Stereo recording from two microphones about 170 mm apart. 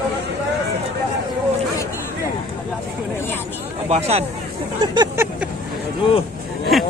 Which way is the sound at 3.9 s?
40° right (ahead or behind).